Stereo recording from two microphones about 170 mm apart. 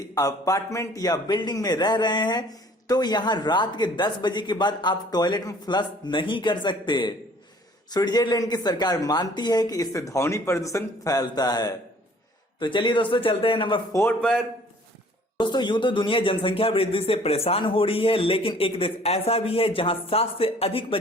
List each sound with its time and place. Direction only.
0.1 s speech: 20° left (ahead or behind)
13.9 s a man's voice: 15° left (ahead or behind)
15.4 s speech: 25° left (ahead or behind)